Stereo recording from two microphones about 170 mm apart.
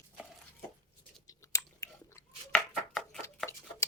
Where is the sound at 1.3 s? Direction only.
20° left (ahead or behind).